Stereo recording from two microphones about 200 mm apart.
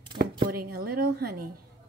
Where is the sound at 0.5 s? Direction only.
50° right (ahead or behind).